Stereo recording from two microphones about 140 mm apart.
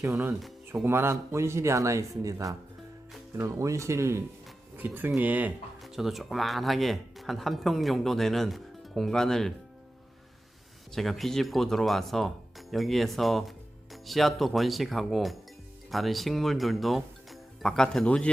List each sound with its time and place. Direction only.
0.0 s speech: 15° right (ahead or behind)
5.8 s speech: centre (ahead or behind)
10.9 s speech: centre (ahead or behind)